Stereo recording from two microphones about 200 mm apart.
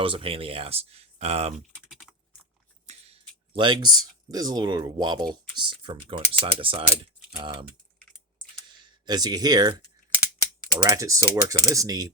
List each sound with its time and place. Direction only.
0.0 s speech: 25° right (ahead or behind)
2.8 s speech: 30° right (ahead or behind)
8.8 s speech: 20° right (ahead or behind)